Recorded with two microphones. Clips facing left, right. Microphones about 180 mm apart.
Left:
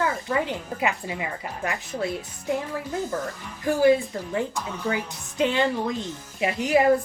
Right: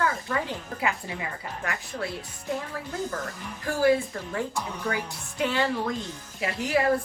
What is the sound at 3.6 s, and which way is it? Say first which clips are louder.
A woman's voice: left 4 dB; 20° left (ahead or behind).